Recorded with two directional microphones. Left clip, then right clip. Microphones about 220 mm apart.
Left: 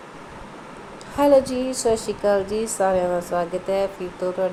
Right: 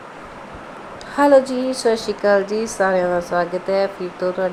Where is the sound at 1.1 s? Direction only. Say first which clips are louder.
Right 3 dB; 15° right (ahead or behind).